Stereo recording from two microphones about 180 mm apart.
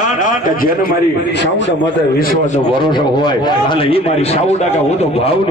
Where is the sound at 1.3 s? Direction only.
75° left (ahead or behind).